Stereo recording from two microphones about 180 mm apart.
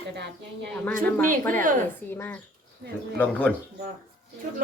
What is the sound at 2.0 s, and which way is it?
Speech, 10° left (ahead or behind).